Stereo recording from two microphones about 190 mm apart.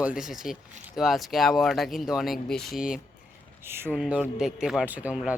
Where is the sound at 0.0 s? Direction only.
5° right (ahead or behind).